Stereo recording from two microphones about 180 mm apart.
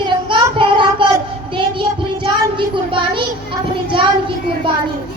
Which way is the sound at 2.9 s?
30° right (ahead or behind).